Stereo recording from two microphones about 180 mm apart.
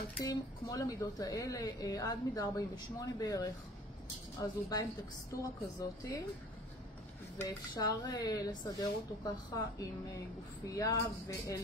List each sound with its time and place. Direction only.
0.2 s speech: 20° left (ahead or behind)
7.3 s speech: 20° left (ahead or behind)
10.7 s speech: 20° left (ahead or behind)